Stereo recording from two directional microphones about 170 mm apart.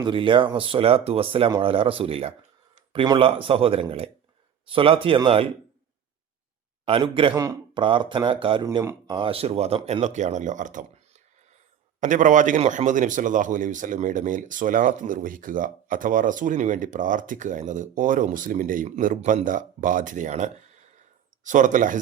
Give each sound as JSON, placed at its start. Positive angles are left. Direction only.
{"t": 0.0, "sound": "speech", "side_deg": -30}
{"t": 6.8, "sound": "speech", "side_deg": -30}
{"t": 8.6, "sound": "speech", "side_deg": -15}
{"t": 9.1, "sound": "a man's voice", "side_deg": -30}